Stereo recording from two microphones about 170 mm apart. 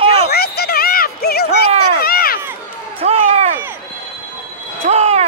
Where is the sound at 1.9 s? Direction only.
65° left (ahead or behind).